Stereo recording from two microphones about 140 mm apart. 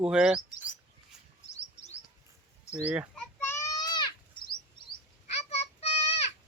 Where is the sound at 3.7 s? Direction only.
30° left (ahead or behind).